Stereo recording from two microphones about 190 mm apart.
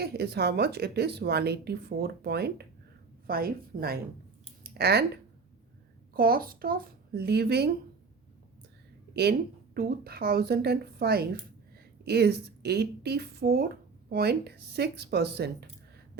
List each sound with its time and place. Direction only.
0.0 s a child's voice: 60° right (ahead or behind)
4.6 s a sound: 55° right (ahead or behind)
6.1 s a child's voice: 50° right (ahead or behind)
9.7 s speech: 55° right (ahead or behind)